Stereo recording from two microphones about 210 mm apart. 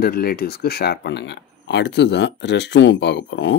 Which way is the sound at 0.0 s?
45° left (ahead or behind).